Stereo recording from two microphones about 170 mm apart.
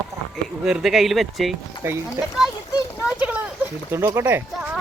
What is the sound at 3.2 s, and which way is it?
Speech, 10° right (ahead or behind).